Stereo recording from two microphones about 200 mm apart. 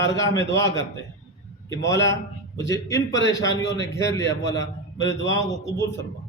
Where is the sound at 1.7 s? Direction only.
15° left (ahead or behind).